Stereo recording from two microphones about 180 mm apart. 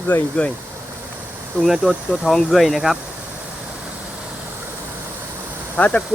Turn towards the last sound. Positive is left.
turn(degrees=5)  # may be behind; listen again after turning